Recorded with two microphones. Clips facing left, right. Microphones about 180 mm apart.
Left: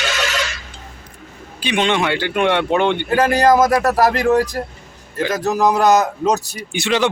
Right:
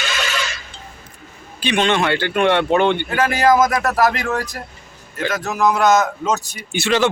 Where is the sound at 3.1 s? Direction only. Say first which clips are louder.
Left 5 dB; 30° left (ahead or behind).